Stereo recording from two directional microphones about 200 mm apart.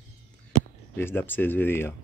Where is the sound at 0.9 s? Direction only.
10° left (ahead or behind).